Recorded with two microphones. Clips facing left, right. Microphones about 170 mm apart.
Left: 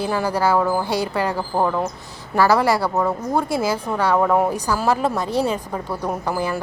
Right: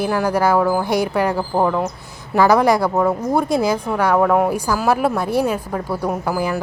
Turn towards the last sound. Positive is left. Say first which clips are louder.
# right 2 dB
turn(degrees=-10)  # may be behind; listen again after turning